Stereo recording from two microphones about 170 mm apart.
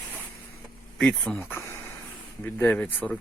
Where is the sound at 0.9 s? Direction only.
5° left (ahead or behind).